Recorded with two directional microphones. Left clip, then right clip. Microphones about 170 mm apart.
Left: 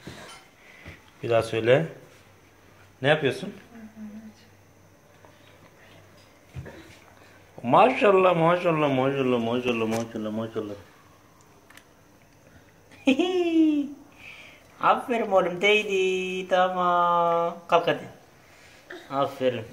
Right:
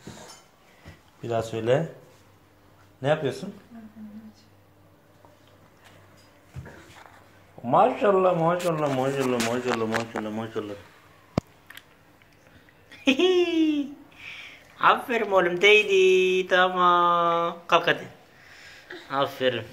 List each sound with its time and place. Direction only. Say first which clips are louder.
1.2 s speech: left 4 dB; centre (ahead or behind)
3.0 s speech: left 2 dB; centre (ahead or behind)
7.6 s speech: left 2 dB; centre (ahead or behind); by 10.7 s 20° left (ahead or behind)
12.9 s speech: right 3 dB; 5° left (ahead or behind)